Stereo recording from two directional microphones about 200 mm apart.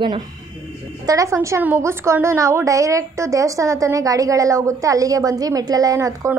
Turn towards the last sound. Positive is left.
turn(degrees=-15)  # may be behind; listen again after turning